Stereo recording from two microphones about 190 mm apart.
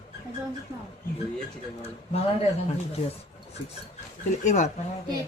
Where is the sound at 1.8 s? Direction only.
30° left (ahead or behind).